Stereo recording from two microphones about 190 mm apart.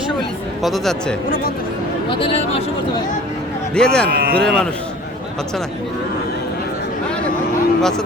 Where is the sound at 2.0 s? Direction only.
30° left (ahead or behind).